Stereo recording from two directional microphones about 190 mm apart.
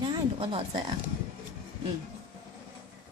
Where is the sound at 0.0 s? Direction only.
25° right (ahead or behind).